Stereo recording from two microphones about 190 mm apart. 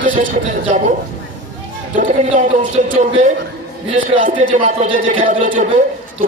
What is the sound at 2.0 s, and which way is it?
A man's voice, 40° right (ahead or behind).